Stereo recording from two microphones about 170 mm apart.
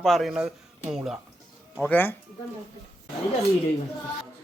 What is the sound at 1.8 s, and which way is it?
Speech, 10° left (ahead or behind).